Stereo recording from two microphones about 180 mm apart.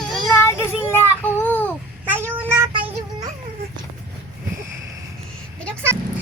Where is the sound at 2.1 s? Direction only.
10° right (ahead or behind).